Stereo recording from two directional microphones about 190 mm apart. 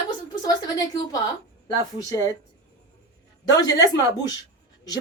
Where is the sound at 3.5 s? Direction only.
20° left (ahead or behind).